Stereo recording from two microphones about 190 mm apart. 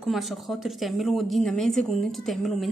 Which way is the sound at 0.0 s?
Centre (ahead or behind).